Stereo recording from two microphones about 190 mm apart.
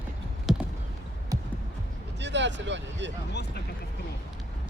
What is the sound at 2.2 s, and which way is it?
Speech, 70° right (ahead or behind).